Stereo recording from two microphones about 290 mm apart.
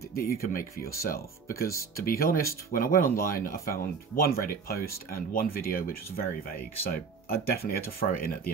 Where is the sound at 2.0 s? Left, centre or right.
Left.